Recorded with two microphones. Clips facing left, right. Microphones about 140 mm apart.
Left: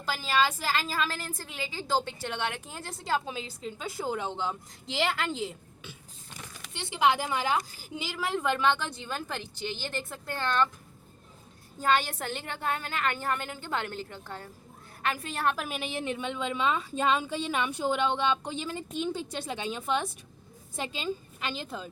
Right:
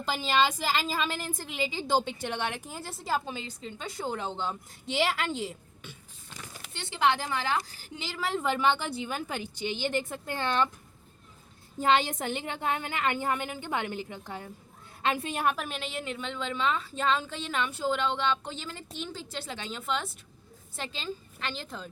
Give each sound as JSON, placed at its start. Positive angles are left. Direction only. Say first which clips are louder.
{"t": 0.0, "sound": "a woman's voice", "louder": "right 1 dB", "side_deg": -20}
{"t": 6.7, "sound": "a woman's voice", "louder": "left 1 dB", "side_deg": 10}
{"t": 11.8, "sound": "a woman's voice", "louder": "right 2 dB", "side_deg": -20}
{"t": 15.4, "sound": "a woman's voice", "louder": "left 1 dB", "side_deg": 0}
{"t": 15.8, "sound": "a woman's voice", "louder": "left 3 dB", "side_deg": 20}